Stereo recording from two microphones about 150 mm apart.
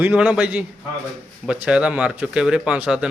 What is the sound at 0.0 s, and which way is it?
A man's voice, 10° right (ahead or behind).